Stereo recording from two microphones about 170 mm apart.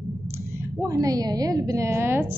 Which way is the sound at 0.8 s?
20° right (ahead or behind).